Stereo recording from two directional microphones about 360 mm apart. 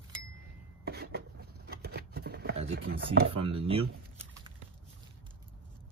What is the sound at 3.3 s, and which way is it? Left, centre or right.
Speech, centre.